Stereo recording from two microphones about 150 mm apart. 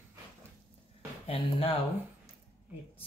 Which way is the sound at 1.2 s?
40° left (ahead or behind).